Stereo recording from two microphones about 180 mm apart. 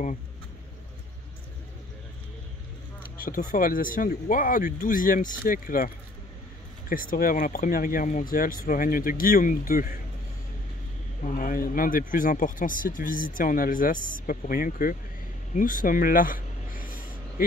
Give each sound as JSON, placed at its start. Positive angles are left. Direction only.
{"t": 3.2, "sound": "speech", "side_deg": 50}
{"t": 6.9, "sound": "speech", "side_deg": 50}
{"t": 11.2, "sound": "speech", "side_deg": 50}
{"t": 15.5, "sound": "a sound", "side_deg": 50}